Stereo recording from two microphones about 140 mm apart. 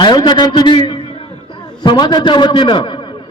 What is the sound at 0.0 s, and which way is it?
A man's voice, 30° left (ahead or behind).